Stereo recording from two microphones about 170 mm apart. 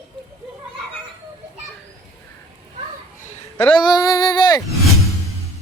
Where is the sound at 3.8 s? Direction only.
25° left (ahead or behind).